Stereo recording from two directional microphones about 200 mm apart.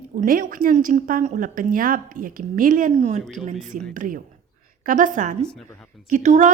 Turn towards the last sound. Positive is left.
turn(degrees=-35)  # may be behind; listen again after turning